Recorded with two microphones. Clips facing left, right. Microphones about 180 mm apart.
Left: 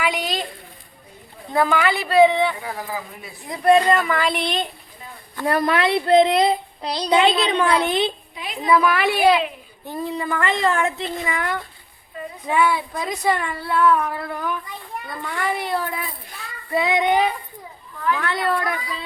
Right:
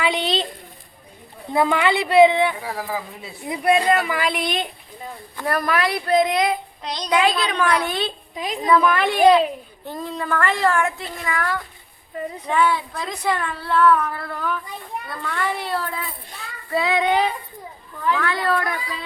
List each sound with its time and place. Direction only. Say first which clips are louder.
0.0 s a sound: right 2 dB; 25° right (ahead or behind)
1.5 s speech: right 1 dB; 20° right (ahead or behind)
2.6 s speech: right 2 dB; 30° right (ahead or behind)
3.5 s speech: left 2 dB; 10° right (ahead or behind)
5.5 s speech: left 2 dB; 25° left (ahead or behind)
8.6 s speech: even; 5° left (ahead or behind); by 18.6 s 20° left (ahead or behind)